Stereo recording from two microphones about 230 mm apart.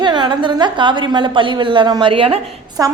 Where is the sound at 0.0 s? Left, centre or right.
Centre.